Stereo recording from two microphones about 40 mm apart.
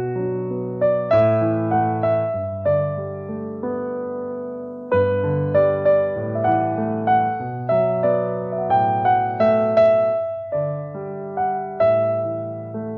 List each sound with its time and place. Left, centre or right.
0.0 s music: centre
4.8 s music: centre